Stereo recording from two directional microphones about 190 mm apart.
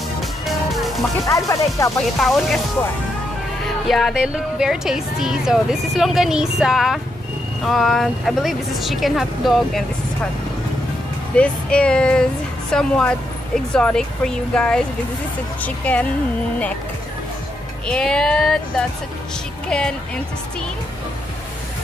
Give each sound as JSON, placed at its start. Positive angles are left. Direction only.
{"t": 0.5, "sound": "music", "side_deg": 0}
{"t": 1.5, "sound": "speech", "side_deg": 15}
{"t": 2.0, "sound": "a woman's voice", "side_deg": 0}
{"t": 3.6, "sound": "a woman's voice", "side_deg": 0}
{"t": 11.3, "sound": "a woman's voice", "side_deg": 5}
{"t": 17.8, "sound": "a woman's voice", "side_deg": 5}